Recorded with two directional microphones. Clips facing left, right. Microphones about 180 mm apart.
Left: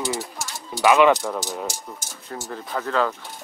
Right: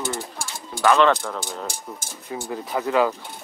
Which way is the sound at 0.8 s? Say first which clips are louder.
Left 2 dB; 10° left (ahead or behind).